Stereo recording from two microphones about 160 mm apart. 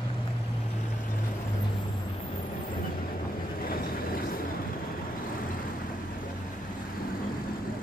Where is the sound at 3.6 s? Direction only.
65° left (ahead or behind).